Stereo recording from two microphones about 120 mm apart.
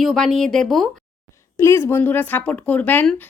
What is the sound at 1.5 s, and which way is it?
A woman's voice, 20° left (ahead or behind).